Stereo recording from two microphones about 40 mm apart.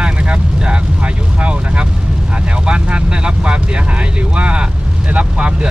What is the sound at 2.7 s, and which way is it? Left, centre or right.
Speech, right.